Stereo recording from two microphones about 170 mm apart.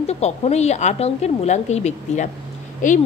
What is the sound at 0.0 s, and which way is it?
A woman's voice, 40° left (ahead or behind).